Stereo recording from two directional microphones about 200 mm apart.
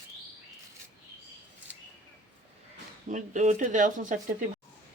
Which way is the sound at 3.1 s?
40° right (ahead or behind).